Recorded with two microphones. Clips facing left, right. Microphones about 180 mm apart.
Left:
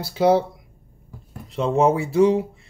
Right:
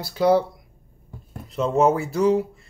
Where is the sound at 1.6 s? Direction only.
30° left (ahead or behind).